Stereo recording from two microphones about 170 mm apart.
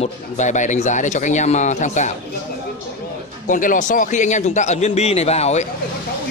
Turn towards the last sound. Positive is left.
turn(degrees=40)  # may be behind; listen again after turning